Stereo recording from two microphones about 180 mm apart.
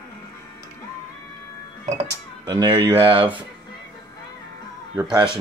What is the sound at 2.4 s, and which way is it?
Speech, 20° right (ahead or behind).